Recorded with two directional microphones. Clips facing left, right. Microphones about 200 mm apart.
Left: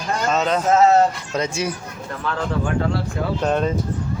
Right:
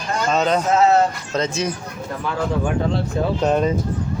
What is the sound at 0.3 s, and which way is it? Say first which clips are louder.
Speech: even; centre (ahead or behind).